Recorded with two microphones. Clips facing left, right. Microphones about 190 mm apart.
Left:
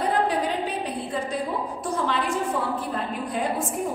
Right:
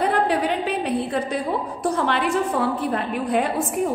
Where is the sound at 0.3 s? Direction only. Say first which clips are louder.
Right 4 dB; 70° right (ahead or behind).